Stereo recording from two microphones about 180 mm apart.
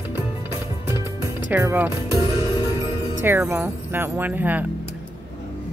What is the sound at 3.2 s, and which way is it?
Jingle bell, 10° right (ahead or behind).